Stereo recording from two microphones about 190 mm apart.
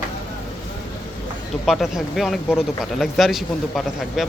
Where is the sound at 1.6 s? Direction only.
Centre (ahead or behind).